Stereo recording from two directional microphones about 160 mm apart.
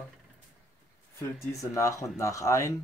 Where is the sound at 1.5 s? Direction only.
20° left (ahead or behind).